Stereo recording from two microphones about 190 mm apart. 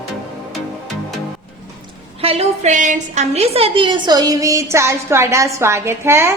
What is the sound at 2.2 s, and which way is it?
A woman's voice, 30° right (ahead or behind).